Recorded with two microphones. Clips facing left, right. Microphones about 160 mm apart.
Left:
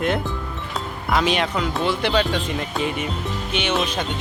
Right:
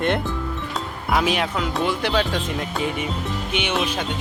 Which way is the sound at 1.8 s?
10° right (ahead or behind).